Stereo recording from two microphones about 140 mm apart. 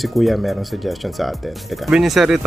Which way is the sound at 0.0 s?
Centre (ahead or behind).